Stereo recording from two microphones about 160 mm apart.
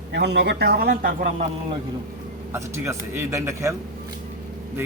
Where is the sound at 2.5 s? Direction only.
15° right (ahead or behind).